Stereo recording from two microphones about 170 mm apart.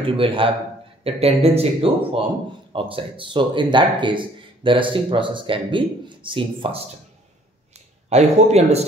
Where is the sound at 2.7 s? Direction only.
30° right (ahead or behind).